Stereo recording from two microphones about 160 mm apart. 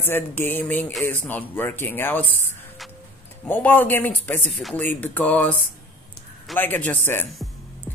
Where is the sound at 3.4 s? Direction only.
10° left (ahead or behind).